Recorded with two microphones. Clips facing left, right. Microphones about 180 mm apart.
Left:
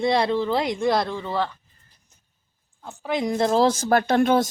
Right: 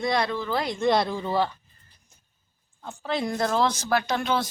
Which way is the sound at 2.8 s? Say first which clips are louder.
Left 3 dB; 15° left (ahead or behind).